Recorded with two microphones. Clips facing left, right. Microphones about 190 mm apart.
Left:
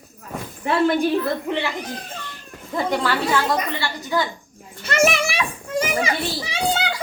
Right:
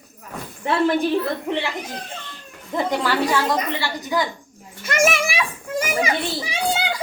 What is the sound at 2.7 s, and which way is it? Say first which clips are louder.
A woman's voice: even; 15° right (ahead or behind).